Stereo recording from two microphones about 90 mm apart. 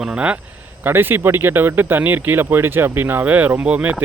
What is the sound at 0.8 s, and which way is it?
Speech, 25° right (ahead or behind).